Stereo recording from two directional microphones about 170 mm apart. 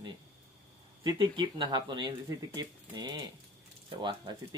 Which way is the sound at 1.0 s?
25° right (ahead or behind).